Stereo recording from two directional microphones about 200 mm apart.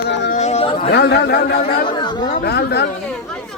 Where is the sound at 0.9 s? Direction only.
55° left (ahead or behind).